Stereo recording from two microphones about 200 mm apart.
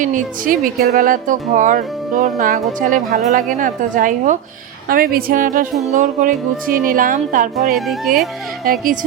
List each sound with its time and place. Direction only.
0.0 s a woman's voice: 40° right (ahead or behind)
7.5 s speech: centre (ahead or behind)
8.6 s a woman's voice: 45° right (ahead or behind)